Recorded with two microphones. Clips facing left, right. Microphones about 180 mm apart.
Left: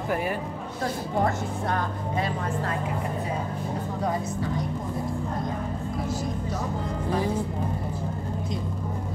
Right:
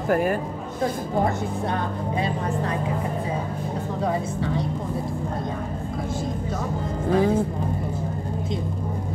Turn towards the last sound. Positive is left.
turn(degrees=-55)  # may be behind; listen again after turning